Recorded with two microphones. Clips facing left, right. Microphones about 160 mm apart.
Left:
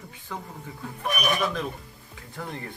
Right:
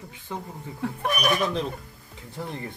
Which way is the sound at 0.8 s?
75° right (ahead or behind).